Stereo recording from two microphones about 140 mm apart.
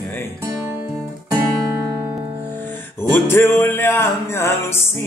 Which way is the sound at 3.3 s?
15° left (ahead or behind).